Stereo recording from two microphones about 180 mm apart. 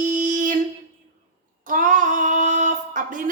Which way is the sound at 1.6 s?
45° right (ahead or behind).